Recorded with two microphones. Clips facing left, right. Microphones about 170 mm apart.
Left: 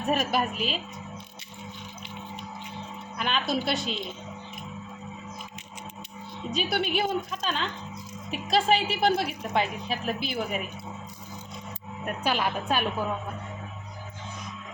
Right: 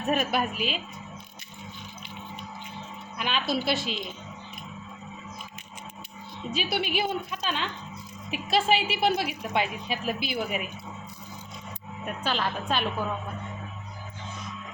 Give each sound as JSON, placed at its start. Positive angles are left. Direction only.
{"t": 0.0, "sound": "a woman's voice", "side_deg": 0}
{"t": 3.2, "sound": "a woman's voice", "side_deg": 0}
{"t": 6.5, "sound": "a woman's voice", "side_deg": -5}
{"t": 12.0, "sound": "a woman's voice", "side_deg": 10}